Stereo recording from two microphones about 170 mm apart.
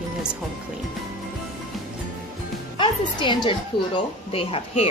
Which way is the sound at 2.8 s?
30° left (ahead or behind).